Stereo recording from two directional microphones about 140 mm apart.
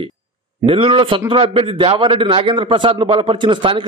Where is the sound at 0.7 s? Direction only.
40° right (ahead or behind).